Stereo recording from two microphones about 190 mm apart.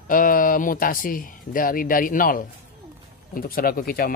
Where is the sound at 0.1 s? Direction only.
45° left (ahead or behind).